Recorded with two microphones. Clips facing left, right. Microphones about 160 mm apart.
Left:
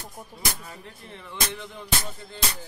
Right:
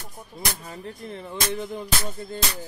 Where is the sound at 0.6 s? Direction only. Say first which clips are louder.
Right 6 dB; 35° right (ahead or behind).